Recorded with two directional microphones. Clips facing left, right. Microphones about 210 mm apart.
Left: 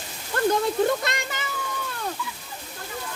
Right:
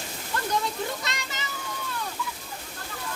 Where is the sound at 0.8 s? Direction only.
55° left (ahead or behind).